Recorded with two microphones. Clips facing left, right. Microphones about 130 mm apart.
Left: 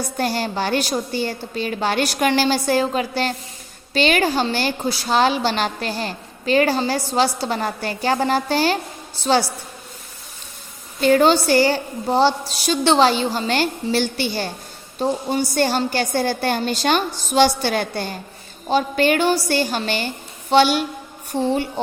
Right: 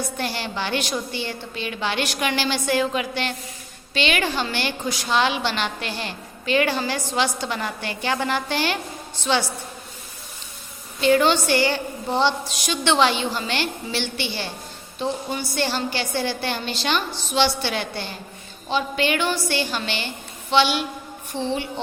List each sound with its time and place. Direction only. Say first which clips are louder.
0.2 s a woman's voice: left 10 dB; 40° left (ahead or behind)
11.0 s a woman's voice: left 3 dB; 40° left (ahead or behind)